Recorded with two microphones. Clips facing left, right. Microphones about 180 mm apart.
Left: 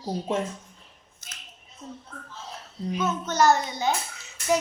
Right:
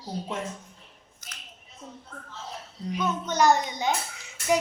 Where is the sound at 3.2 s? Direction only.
15° right (ahead or behind).